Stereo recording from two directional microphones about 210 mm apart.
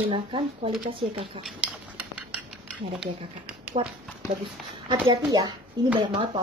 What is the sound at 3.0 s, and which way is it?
Speech, 5° right (ahead or behind).